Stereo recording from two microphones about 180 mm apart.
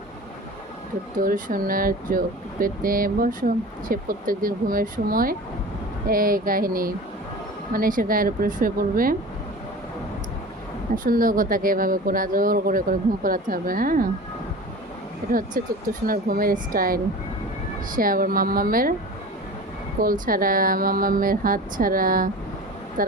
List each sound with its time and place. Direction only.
1.1 s speech: 50° right (ahead or behind)
10.9 s speech: 50° right (ahead or behind)
15.3 s speech: 50° right (ahead or behind)
20.0 s speech: 50° right (ahead or behind)